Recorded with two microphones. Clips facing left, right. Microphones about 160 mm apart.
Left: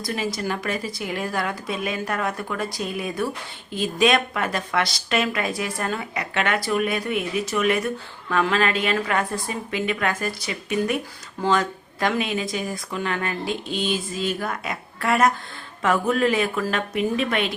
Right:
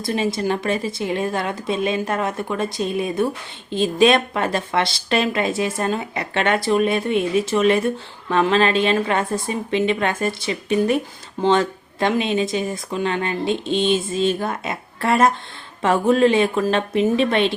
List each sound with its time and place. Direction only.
0.0 s speech: 25° right (ahead or behind)